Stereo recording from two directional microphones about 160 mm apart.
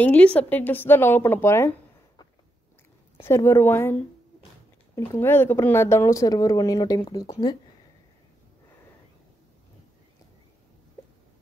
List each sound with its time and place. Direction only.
0.0 s speech: 10° left (ahead or behind)
3.2 s speech: 15° left (ahead or behind)